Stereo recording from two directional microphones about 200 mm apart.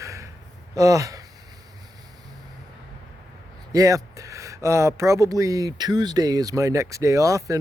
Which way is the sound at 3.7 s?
15° right (ahead or behind).